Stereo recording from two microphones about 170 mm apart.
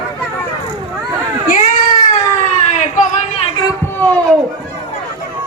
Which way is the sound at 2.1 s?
45° left (ahead or behind).